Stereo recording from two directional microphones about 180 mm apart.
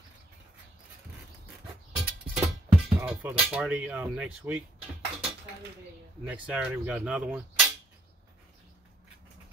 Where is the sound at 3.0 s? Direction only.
10° right (ahead or behind).